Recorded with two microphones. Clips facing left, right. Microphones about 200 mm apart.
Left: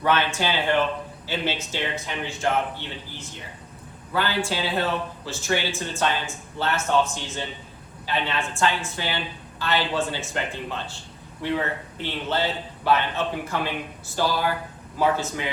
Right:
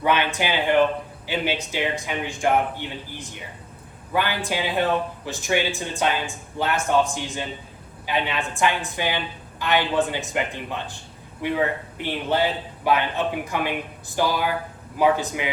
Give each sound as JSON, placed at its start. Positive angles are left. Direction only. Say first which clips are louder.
{"t": 0.0, "sound": "speech", "louder": "right 1 dB", "side_deg": -15}